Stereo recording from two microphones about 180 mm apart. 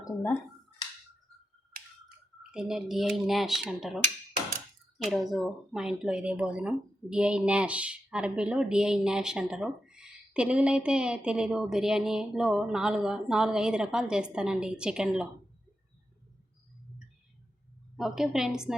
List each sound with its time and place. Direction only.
0.0 s speech: 15° left (ahead or behind)
1.7 s finger snapping: 60° right (ahead or behind)
2.4 s speech: 5° right (ahead or behind)
5.0 s speech: centre (ahead or behind)
17.9 s speech: centre (ahead or behind)